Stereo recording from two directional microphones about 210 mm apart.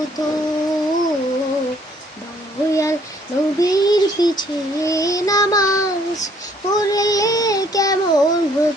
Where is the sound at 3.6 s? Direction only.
15° left (ahead or behind).